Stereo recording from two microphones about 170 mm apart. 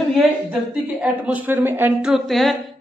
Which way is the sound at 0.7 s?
5° right (ahead or behind).